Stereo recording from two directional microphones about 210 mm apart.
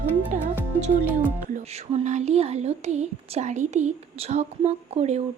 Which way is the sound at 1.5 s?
35° right (ahead or behind).